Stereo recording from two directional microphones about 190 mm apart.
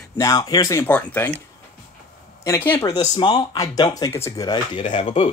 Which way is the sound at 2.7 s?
20° left (ahead or behind).